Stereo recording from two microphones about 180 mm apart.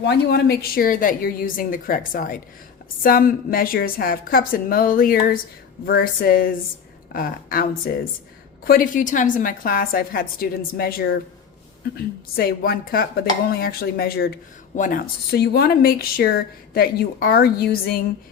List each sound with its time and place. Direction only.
0.0 s a woman's voice: 65° left (ahead or behind)
12.4 s speech: 55° left (ahead or behind)